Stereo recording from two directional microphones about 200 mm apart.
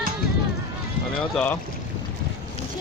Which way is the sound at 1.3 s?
5° left (ahead or behind).